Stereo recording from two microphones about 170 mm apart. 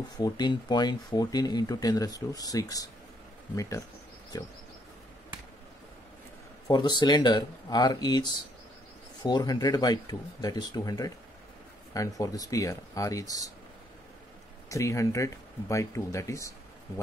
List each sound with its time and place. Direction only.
0.2 s speech: 25° left (ahead or behind)
6.7 s speech: 25° left (ahead or behind)
14.7 s speech: 20° left (ahead or behind)